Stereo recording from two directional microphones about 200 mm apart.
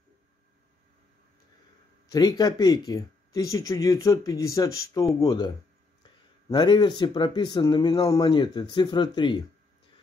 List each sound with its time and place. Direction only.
2.0 s speech: 20° left (ahead or behind)
6.5 s speech: 25° left (ahead or behind)